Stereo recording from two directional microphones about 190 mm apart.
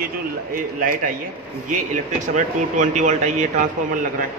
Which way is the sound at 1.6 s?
40° right (ahead or behind).